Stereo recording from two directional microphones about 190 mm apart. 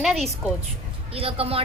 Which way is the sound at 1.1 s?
30° right (ahead or behind).